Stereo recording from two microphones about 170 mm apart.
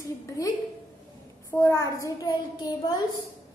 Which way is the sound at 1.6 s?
15° left (ahead or behind).